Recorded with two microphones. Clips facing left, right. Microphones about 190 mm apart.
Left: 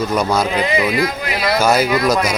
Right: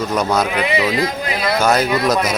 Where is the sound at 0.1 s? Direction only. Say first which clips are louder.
Left 1 dB; centre (ahead or behind).